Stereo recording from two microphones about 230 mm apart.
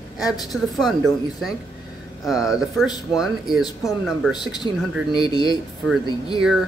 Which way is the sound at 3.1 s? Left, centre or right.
Centre.